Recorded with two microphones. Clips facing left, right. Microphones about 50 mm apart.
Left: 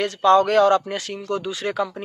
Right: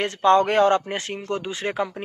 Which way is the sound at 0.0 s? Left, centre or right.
Right.